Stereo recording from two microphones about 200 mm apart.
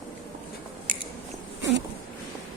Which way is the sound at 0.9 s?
40° right (ahead or behind).